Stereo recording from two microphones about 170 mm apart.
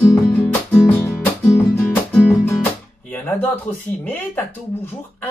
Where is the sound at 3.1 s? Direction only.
10° left (ahead or behind).